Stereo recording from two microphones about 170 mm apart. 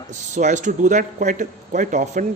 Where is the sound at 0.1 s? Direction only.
45° right (ahead or behind).